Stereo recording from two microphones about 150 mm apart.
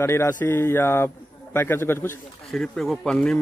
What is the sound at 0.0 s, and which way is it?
A man's voice, 15° left (ahead or behind).